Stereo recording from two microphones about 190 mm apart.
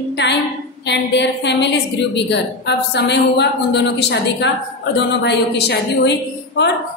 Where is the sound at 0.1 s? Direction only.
65° left (ahead or behind).